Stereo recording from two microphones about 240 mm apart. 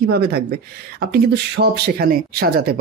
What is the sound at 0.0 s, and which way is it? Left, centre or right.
Speech, right.